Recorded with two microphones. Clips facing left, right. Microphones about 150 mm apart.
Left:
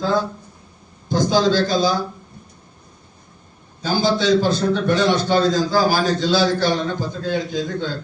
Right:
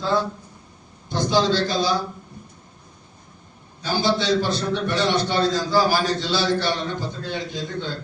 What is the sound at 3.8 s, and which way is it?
A man's voice, 45° left (ahead or behind).